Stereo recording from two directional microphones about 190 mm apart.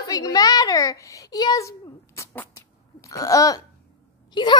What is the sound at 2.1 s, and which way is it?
Sneeze, 15° left (ahead or behind).